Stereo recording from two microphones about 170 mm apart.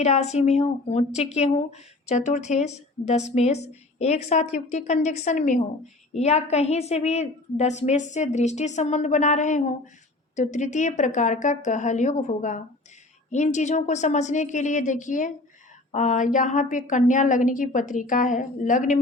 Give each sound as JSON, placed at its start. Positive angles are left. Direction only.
{"t": 0.0, "sound": "a woman's voice", "side_deg": 40}